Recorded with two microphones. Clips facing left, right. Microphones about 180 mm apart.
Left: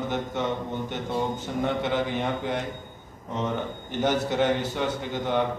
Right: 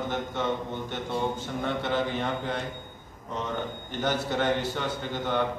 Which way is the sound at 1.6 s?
15° left (ahead or behind).